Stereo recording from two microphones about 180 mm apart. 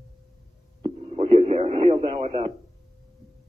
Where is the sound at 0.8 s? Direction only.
35° right (ahead or behind).